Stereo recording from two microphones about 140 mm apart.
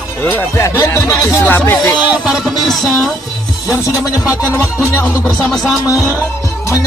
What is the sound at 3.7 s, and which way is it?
Speech, 25° left (ahead or behind).